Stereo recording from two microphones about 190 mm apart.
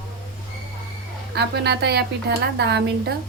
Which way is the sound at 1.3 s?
60° right (ahead or behind).